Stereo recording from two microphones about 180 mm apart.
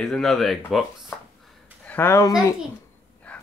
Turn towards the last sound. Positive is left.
turn(degrees=5)  # may be behind; listen again after turning